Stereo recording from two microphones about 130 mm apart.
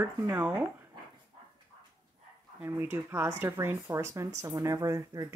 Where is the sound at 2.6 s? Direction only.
15° right (ahead or behind).